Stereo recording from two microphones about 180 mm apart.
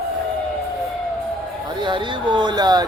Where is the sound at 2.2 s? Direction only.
25° right (ahead or behind).